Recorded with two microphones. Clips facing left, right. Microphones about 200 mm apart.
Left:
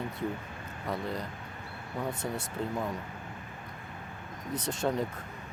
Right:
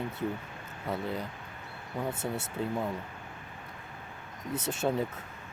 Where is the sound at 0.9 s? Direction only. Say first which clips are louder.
Right 1 dB; 5° right (ahead or behind).